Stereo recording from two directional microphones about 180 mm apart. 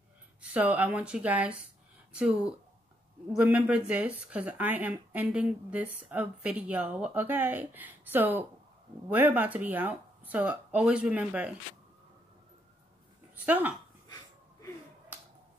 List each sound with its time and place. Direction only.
0.4 s speech: 10° right (ahead or behind)
13.5 s speech: 10° right (ahead or behind)
14.0 s wheeze: 20° left (ahead or behind)
15.1 s finger snapping: 10° right (ahead or behind)